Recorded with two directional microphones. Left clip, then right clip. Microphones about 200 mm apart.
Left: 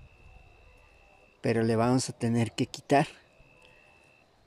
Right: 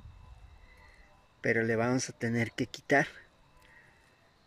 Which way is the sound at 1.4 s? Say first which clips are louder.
Left 2 dB; 5° left (ahead or behind).